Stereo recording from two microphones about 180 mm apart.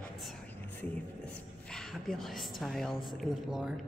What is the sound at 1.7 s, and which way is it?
A woman's voice, centre (ahead or behind).